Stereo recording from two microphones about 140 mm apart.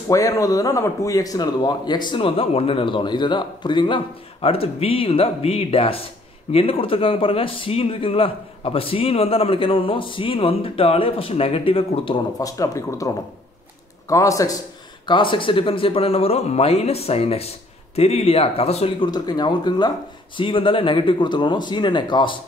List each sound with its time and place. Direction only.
0.1 s a man's voice: 25° left (ahead or behind); by 12.2 s 40° left (ahead or behind)
12.4 s speech: 25° left (ahead or behind)
15.0 s speech: 35° left (ahead or behind)
19.0 s a man's voice: 30° left (ahead or behind)